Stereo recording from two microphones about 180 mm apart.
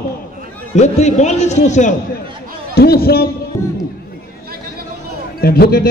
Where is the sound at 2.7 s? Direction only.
60° left (ahead or behind).